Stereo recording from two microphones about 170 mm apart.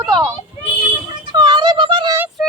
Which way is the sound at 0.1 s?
25° right (ahead or behind).